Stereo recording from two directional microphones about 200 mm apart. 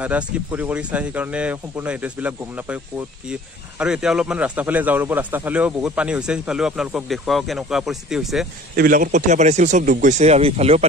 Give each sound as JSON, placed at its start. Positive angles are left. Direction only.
{"t": 0.0, "sound": "speech", "side_deg": -10}
{"t": 3.8, "sound": "speech", "side_deg": -5}
{"t": 8.7, "sound": "speech", "side_deg": -45}